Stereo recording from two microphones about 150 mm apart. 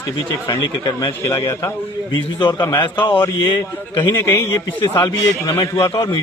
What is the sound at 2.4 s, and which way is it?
A man's voice, 30° left (ahead or behind).